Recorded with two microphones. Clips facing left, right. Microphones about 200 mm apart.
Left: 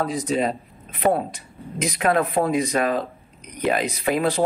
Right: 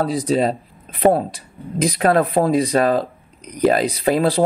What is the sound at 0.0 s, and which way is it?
Speech, 35° right (ahead or behind).